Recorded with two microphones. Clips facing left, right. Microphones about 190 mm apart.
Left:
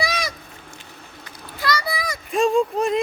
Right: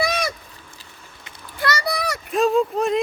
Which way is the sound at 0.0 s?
55° right (ahead or behind).